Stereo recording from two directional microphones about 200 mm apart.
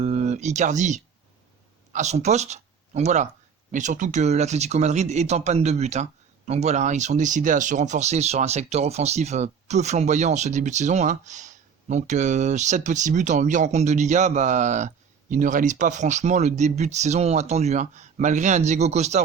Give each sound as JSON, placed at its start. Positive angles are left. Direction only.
{"t": 0.0, "sound": "speech", "side_deg": -35}